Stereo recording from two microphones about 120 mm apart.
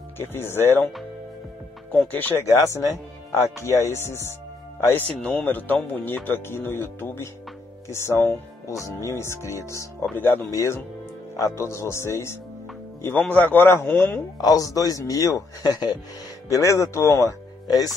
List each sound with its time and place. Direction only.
0.2 s speech: 20° left (ahead or behind)
2.0 s speech: 15° left (ahead or behind)
5.2 s speech: 10° left (ahead or behind)
14.4 s speech: 30° left (ahead or behind)